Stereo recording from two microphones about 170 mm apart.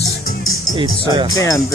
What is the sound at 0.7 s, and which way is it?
Speech, 30° right (ahead or behind).